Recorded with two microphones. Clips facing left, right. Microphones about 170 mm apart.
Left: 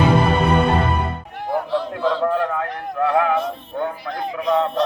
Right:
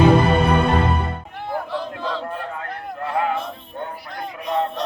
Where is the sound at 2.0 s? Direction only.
90° left.